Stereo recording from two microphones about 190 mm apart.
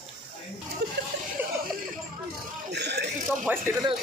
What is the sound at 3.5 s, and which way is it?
Speech, 10° right (ahead or behind).